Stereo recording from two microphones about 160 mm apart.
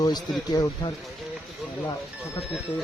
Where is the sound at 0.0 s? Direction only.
25° left (ahead or behind).